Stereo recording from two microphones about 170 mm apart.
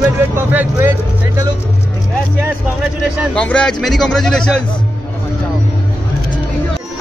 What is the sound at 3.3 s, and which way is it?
Speech, 5° left (ahead or behind).